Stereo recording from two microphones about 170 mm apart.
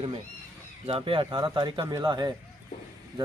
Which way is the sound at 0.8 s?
35° right (ahead or behind).